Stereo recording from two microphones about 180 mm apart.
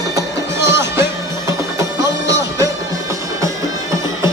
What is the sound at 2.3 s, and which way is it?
Music, 15° right (ahead or behind).